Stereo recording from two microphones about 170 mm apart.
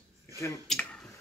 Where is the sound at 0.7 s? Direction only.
Centre (ahead or behind).